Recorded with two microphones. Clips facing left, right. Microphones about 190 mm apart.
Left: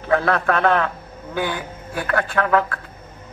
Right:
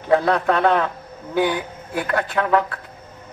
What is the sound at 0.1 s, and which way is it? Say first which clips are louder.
A man's voice: right 2 dB; 20° right (ahead or behind).